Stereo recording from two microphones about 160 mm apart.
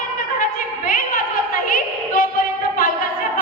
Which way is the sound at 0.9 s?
60° left (ahead or behind).